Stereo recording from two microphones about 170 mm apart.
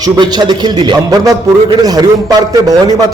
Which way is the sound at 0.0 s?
25° right (ahead or behind).